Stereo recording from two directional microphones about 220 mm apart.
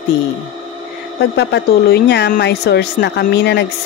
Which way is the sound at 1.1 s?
50° left (ahead or behind).